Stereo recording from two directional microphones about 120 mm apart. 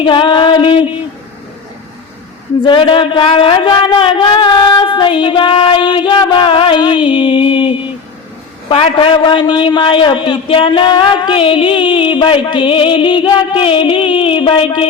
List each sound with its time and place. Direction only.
0.0 s a man's voice: 45° left (ahead or behind)
2.6 s a man's voice: 45° left (ahead or behind)